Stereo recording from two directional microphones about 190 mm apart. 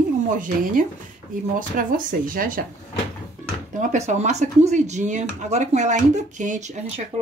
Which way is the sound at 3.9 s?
35° right (ahead or behind).